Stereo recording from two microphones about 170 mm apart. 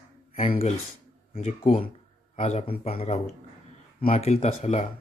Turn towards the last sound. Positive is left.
turn(degrees=40)  # may be behind; listen again after turning